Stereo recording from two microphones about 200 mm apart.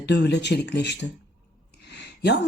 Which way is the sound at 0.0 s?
60° left (ahead or behind).